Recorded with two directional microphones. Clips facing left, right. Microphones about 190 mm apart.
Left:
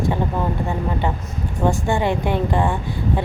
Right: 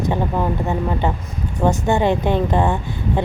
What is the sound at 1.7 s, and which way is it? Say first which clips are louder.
Speech: right 3 dB; 20° right (ahead or behind).